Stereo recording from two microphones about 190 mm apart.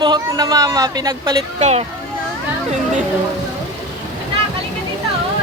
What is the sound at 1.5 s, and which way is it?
Speech, 35° right (ahead or behind).